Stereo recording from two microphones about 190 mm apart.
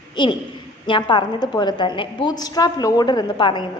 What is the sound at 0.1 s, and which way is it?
A woman's voice, 25° left (ahead or behind).